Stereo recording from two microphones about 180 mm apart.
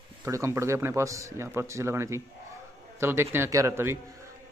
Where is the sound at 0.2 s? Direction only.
15° right (ahead or behind).